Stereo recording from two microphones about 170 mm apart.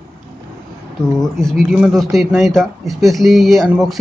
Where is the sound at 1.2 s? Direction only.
5° left (ahead or behind).